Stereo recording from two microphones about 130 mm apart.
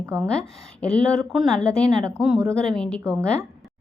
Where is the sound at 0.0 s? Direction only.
20° right (ahead or behind).